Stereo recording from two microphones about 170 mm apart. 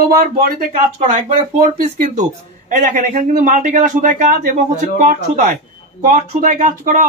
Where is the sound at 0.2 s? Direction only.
60° right (ahead or behind).